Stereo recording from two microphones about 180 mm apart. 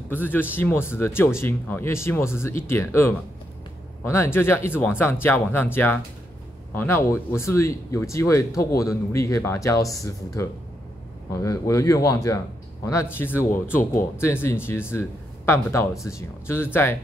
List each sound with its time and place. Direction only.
0.1 s speech: 10° left (ahead or behind)